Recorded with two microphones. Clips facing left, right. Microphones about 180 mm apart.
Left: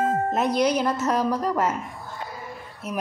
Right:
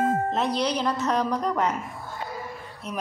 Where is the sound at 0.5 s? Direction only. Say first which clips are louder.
Left 4 dB; 10° left (ahead or behind).